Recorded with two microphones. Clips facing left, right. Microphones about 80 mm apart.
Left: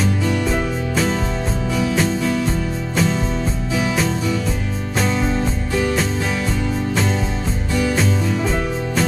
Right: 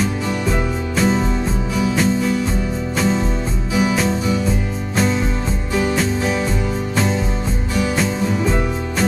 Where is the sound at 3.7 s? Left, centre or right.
Centre.